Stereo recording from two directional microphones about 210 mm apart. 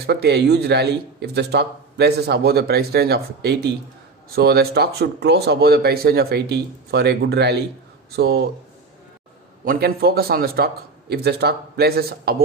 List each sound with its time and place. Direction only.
0.0 s speech: 50° right (ahead or behind)
9.6 s speech: 45° right (ahead or behind)